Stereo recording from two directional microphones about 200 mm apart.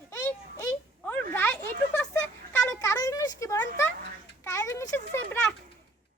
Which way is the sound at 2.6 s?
15° left (ahead or behind).